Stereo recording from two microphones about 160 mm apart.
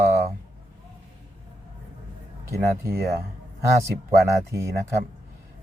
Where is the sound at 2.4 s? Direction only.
20° right (ahead or behind).